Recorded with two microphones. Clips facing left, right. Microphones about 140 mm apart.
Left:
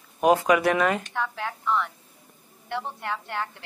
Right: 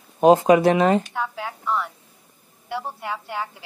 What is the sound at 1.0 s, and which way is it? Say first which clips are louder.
A woman's voice: right 1 dB; 10° right (ahead or behind).